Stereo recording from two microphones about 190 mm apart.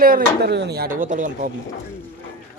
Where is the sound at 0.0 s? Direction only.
55° right (ahead or behind).